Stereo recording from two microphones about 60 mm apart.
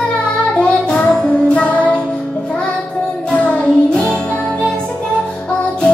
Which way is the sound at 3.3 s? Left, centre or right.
Left.